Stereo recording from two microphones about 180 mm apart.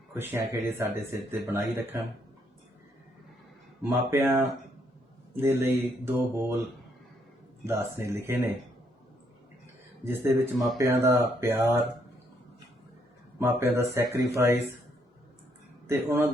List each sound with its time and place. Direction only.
0.1 s speech: 15° right (ahead or behind)
3.8 s speech: 15° right (ahead or behind)
7.6 s speech: 15° right (ahead or behind)
10.0 s speech: 15° right (ahead or behind)
13.4 s speech: 15° right (ahead or behind)
15.9 s speech: 15° right (ahead or behind)